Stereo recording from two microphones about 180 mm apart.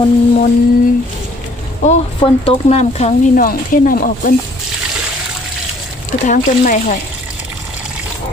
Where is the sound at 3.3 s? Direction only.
50° left (ahead or behind).